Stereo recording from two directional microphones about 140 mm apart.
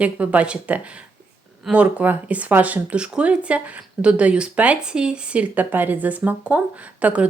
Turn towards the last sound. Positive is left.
turn(degrees=-10)  # may be behind; listen again after turning